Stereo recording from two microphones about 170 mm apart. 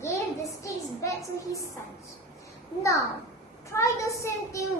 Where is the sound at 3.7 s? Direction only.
15° left (ahead or behind).